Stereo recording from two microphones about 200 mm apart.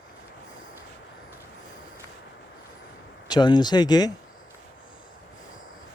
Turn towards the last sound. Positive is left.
turn(degrees=20)  # may be behind; listen again after turning